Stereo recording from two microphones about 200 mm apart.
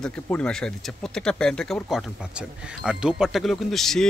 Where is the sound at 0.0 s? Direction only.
5° left (ahead or behind).